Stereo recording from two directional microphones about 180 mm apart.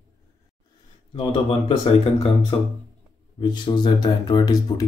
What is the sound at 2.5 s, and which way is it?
Speech, 25° left (ahead or behind).